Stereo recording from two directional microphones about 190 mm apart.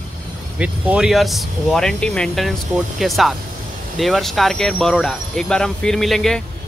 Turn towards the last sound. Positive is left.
turn(degrees=0)  # may be behind; listen again after turning